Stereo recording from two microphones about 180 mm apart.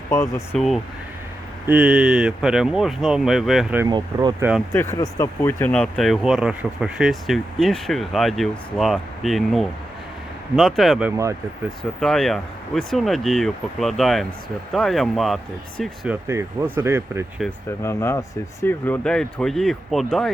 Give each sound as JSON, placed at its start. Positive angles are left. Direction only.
{"t": 0.1, "sound": "speech", "side_deg": 15}
{"t": 1.6, "sound": "speech", "side_deg": -5}
{"t": 3.8, "sound": "speech", "side_deg": -20}
{"t": 4.7, "sound": "speech", "side_deg": 15}
{"t": 16.2, "sound": "speech", "side_deg": -15}
{"t": 17.8, "sound": "speech", "side_deg": 15}